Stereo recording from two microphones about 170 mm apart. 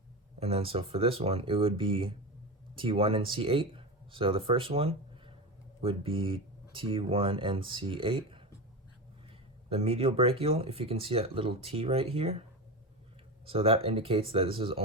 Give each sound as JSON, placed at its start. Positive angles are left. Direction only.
{"t": 0.3, "sound": "speech", "side_deg": -35}
{"t": 9.6, "sound": "speech", "side_deg": -35}